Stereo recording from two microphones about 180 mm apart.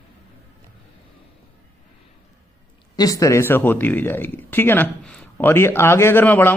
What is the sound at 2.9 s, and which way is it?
Speech, 20° left (ahead or behind).